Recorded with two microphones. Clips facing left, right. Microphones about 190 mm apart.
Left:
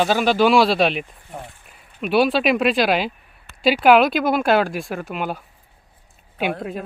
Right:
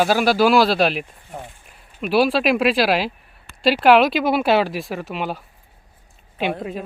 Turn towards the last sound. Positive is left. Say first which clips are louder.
# even
turn(degrees=0)  # may be behind; listen again after turning